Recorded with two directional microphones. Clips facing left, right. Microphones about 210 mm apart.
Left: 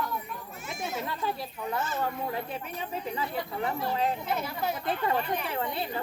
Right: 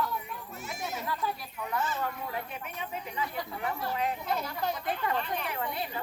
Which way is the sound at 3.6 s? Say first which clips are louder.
Left 2 dB; 30° left (ahead or behind).